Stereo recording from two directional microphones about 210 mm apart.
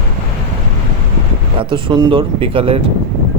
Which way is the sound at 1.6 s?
25° right (ahead or behind).